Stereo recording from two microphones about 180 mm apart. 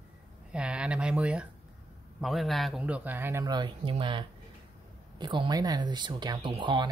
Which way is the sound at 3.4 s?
25° right (ahead or behind).